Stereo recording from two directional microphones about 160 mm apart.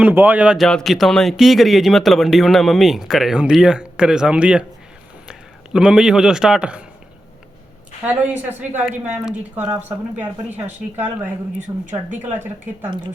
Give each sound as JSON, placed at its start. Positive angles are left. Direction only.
{"t": 0.0, "sound": "a man's voice", "side_deg": -10}
{"t": 8.0, "sound": "a man's voice", "side_deg": -5}
{"t": 11.7, "sound": "a woman's voice", "side_deg": -20}